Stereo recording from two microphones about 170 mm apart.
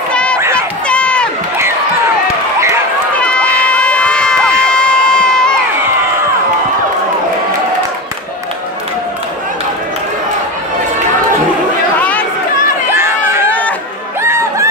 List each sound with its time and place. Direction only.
0.1 s run: 5° left (ahead or behind)
0.8 s crowd: 5° left (ahead or behind)
3.2 s run: 5° left (ahead or behind)
3.7 s crowd: 5° left (ahead or behind)
12.0 s run: 10° left (ahead or behind)
12.9 s crowd: 15° right (ahead or behind)
13.5 s chatter: 10° left (ahead or behind)
14.2 s a sound: 15° right (ahead or behind)